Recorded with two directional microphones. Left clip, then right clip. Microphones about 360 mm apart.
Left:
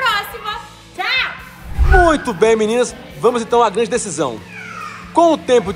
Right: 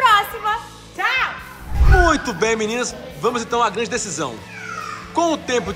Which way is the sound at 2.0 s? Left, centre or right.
Centre.